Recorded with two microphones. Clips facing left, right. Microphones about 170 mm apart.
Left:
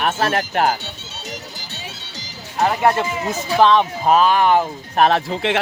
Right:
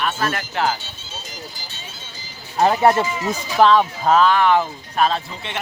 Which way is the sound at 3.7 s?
15° left (ahead or behind).